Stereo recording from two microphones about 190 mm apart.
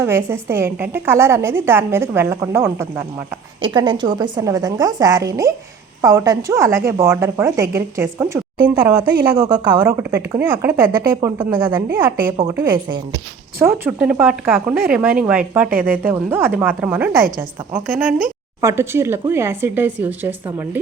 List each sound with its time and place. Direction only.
0.0 s a woman's voice: 15° right (ahead or behind)
3.6 s a woman's voice: 25° right (ahead or behind)